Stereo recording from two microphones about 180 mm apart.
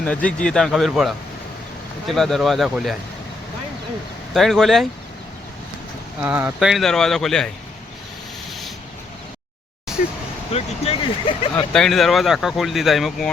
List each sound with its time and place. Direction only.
0.0 s speech: 5° left (ahead or behind)
4.4 s speech: centre (ahead or behind)
6.2 s speech: 10° right (ahead or behind)
10.5 s speech: 35° left (ahead or behind)
11.5 s speech: 5° left (ahead or behind)